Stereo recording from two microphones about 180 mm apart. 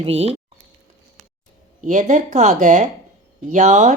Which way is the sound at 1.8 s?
40° right (ahead or behind).